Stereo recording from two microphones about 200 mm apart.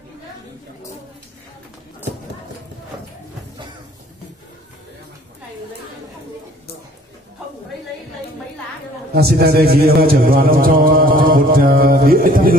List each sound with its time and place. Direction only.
9.1 s a man's voice: 50° right (ahead or behind)